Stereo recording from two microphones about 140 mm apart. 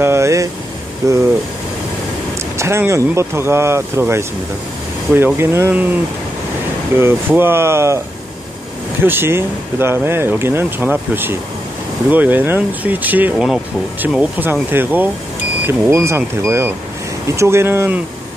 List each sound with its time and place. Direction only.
0.0 s speech: 20° right (ahead or behind)
2.5 s speech: 20° right (ahead or behind)
7.0 s speech: 15° right (ahead or behind)
9.0 s speech: 15° right (ahead or behind)